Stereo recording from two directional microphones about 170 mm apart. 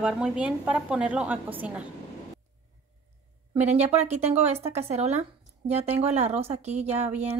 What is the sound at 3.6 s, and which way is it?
Speech, 40° right (ahead or behind).